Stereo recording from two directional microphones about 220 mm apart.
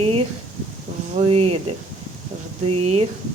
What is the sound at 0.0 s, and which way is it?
A woman's voice, 30° right (ahead or behind).